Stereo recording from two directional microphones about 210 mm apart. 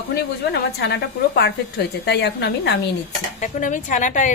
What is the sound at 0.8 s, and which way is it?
A woman's voice, 50° left (ahead or behind).